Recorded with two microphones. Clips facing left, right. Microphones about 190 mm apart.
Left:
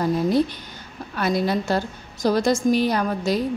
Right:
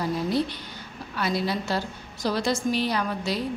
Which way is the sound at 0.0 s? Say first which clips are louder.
Left 5 dB; 50° left (ahead or behind).